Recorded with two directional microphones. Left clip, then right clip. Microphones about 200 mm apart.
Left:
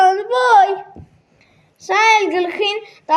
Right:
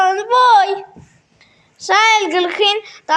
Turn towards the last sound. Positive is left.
turn(degrees=-35)  # may be behind; listen again after turning